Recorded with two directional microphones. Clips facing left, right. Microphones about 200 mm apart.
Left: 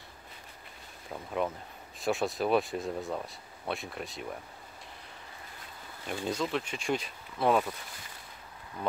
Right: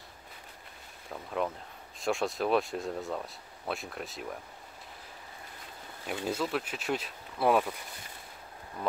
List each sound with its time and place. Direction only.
1.0 s speech: 5° left (ahead or behind)
6.0 s speech: 5° right (ahead or behind)